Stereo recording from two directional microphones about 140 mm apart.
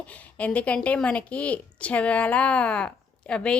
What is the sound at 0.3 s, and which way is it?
A woman's voice, 10° left (ahead or behind).